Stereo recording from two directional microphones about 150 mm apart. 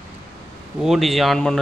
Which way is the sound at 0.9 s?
Centre (ahead or behind).